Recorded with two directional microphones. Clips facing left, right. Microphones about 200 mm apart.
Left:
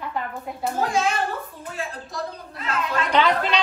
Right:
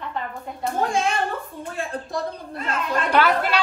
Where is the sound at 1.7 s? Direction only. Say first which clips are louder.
Right 4 dB; 50° right (ahead or behind).